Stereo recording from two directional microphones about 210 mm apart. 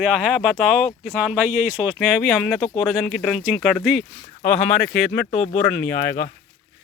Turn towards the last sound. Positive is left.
turn(degrees=10)  # may be behind; listen again after turning